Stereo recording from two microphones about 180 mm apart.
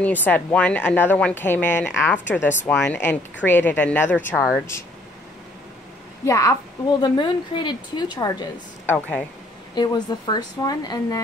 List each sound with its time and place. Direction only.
0.0 s speech: 10° left (ahead or behind)
6.2 s a woman's voice: 15° left (ahead or behind)